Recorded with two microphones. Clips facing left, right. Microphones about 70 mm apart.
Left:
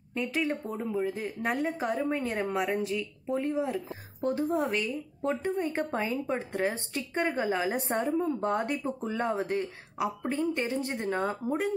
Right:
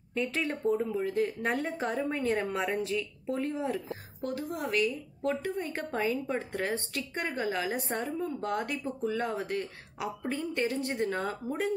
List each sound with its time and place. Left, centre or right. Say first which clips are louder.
0.1 s speech: left 1 dB; centre
4.2 s speech: left 7 dB; left